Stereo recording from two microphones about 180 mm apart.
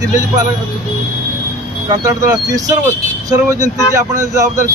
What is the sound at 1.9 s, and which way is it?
Speech, 20° right (ahead or behind).